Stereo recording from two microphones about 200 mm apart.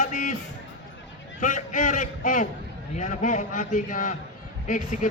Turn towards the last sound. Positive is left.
turn(degrees=40)  # may be behind; listen again after turning